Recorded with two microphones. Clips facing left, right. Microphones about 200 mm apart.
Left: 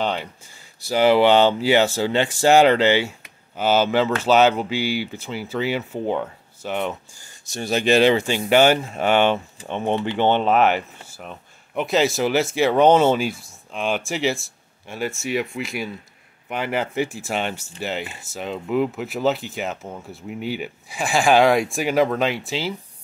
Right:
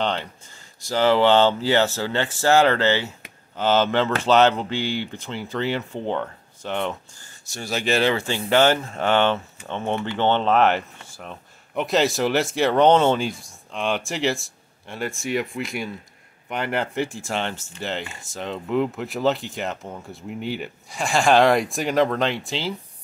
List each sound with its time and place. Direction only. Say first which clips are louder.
0.0 s speech: left 1 dB; 10° left (ahead or behind)
7.4 s speech: left 5 dB; 20° left (ahead or behind); by 22.8 s 5° left (ahead or behind)